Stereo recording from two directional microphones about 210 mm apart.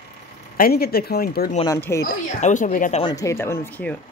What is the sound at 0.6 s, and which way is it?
Speech, 45° left (ahead or behind).